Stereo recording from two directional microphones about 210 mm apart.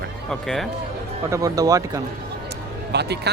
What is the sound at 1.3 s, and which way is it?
Speech, 15° right (ahead or behind).